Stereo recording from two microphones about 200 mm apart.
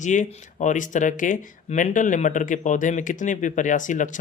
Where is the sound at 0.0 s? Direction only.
40° left (ahead or behind).